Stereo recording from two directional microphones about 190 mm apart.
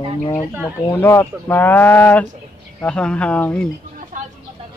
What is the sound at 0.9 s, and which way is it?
Speech, 10° left (ahead or behind).